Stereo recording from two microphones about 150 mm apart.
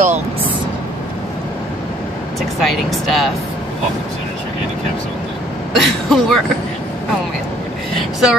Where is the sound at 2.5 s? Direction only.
Centre (ahead or behind).